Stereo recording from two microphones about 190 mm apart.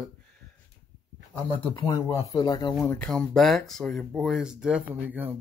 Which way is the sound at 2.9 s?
5° left (ahead or behind).